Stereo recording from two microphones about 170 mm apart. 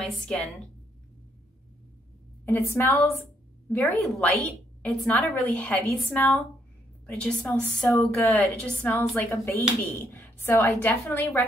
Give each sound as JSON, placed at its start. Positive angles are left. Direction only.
{"t": 0.0, "sound": "a woman's voice", "side_deg": 5}
{"t": 2.7, "sound": "a woman's voice", "side_deg": 10}